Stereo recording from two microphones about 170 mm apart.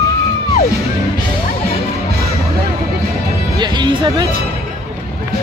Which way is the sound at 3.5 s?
25° right (ahead or behind).